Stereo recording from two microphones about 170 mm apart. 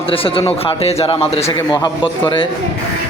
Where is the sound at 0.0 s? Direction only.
35° left (ahead or behind).